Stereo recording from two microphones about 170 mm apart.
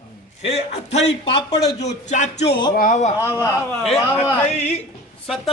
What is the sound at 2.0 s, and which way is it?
Music, 45° left (ahead or behind).